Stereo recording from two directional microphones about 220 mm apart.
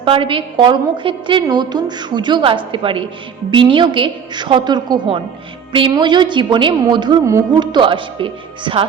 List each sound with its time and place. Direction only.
0.0 s a woman's voice: 25° right (ahead or behind)